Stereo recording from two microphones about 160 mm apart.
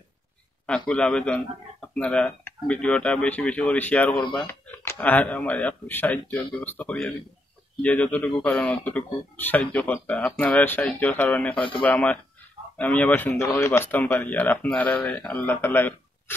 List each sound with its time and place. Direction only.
0.7 s speech: 5° left (ahead or behind)